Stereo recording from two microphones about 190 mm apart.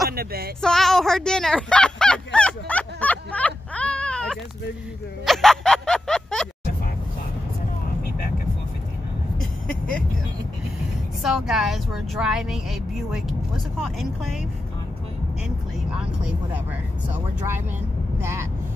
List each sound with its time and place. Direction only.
0.1 s a sound: 55° right (ahead or behind)
0.6 s a sound: centre (ahead or behind)
5.2 s music: centre (ahead or behind)
11.2 s a woman's voice: centre (ahead or behind)
15.9 s a woman's voice: 5° right (ahead or behind)
18.2 s speech: 15° right (ahead or behind)